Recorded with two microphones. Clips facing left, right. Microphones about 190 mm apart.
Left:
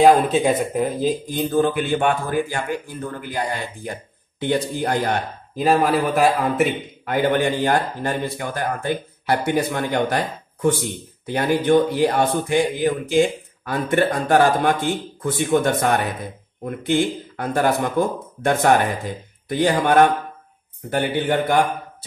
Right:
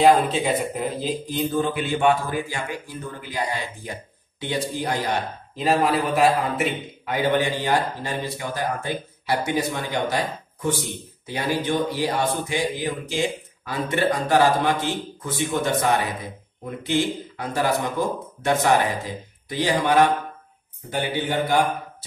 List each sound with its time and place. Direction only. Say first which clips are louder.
0.0 s a man's voice: left 3 dB; 50° left (ahead or behind)
6.2 s a man's voice: left 2 dB; 50° left (ahead or behind)